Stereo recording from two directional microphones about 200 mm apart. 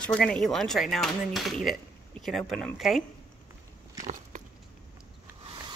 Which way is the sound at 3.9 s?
40° right (ahead or behind).